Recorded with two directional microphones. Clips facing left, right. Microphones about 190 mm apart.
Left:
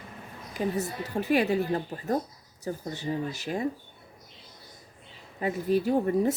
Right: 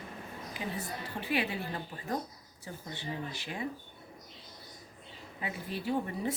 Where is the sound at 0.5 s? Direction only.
40° left (ahead or behind).